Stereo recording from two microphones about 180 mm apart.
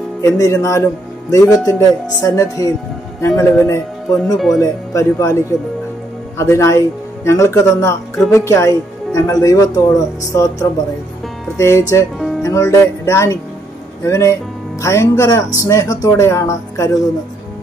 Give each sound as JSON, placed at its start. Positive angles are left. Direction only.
{"t": 0.2, "sound": "speech", "side_deg": 15}
{"t": 11.5, "sound": "music", "side_deg": 15}
{"t": 12.4, "sound": "speech", "side_deg": 20}